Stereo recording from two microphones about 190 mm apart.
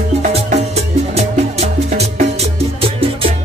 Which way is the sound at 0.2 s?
35° right (ahead or behind).